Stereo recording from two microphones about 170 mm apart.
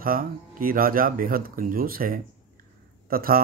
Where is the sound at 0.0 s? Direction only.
55° right (ahead or behind).